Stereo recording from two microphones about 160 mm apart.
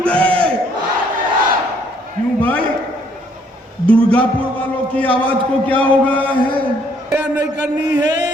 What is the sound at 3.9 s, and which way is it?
A man's voice, 10° left (ahead or behind).